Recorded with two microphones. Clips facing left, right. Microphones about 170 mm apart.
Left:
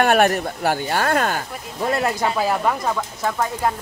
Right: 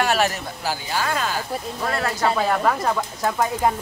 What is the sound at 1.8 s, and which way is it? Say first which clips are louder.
Speech: left 4 dB; 20° left (ahead or behind).